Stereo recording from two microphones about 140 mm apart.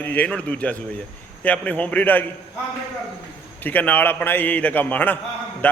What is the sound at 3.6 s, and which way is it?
A man's voice, 10° left (ahead or behind).